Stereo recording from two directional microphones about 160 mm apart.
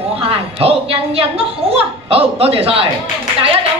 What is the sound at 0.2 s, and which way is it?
A woman's voice, 35° right (ahead or behind).